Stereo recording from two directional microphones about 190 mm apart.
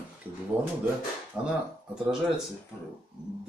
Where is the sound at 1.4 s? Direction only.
5° right (ahead or behind).